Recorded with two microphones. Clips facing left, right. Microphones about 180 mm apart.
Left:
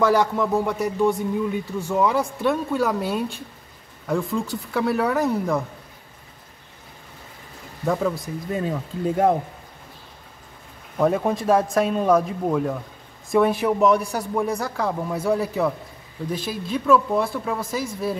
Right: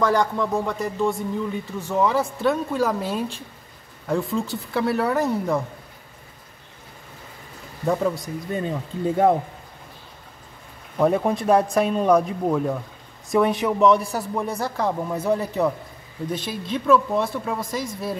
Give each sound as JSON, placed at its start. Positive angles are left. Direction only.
{"t": 0.0, "sound": "speech", "side_deg": 5}
{"t": 1.8, "sound": "speech", "side_deg": 0}
{"t": 8.0, "sound": "speech", "side_deg": 0}
{"t": 11.1, "sound": "speech", "side_deg": 0}